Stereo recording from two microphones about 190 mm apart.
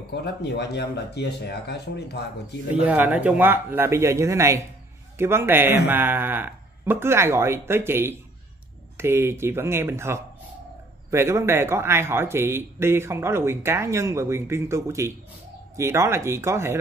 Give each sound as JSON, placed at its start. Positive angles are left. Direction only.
{"t": 0.1, "sound": "speech", "side_deg": 60}
{"t": 2.7, "sound": "speech", "side_deg": -10}